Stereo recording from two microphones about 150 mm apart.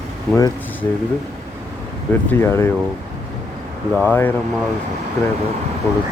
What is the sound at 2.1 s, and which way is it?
Speech, 15° left (ahead or behind).